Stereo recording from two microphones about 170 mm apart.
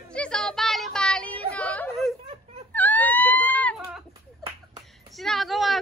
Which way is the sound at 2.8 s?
10° left (ahead or behind).